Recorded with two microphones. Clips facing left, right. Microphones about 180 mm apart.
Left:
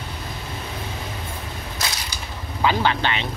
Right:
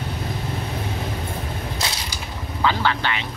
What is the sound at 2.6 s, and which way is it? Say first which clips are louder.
Speech: left 1 dB; 15° left (ahead or behind).